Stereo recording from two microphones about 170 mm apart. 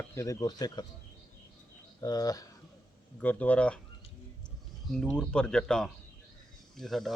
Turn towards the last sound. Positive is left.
turn(degrees=0)  # may be behind; listen again after turning